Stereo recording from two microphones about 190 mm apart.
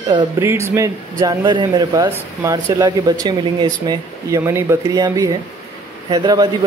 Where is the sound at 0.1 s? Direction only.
15° right (ahead or behind).